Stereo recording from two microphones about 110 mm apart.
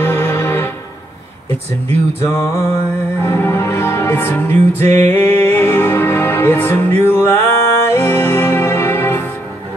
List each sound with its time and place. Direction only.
0.0 s music: 20° left (ahead or behind)
1.5 s speech: 60° right (ahead or behind)
2.2 s music: 25° left (ahead or behind)